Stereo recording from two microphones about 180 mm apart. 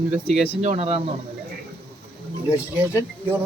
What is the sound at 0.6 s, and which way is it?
Speech, 35° right (ahead or behind).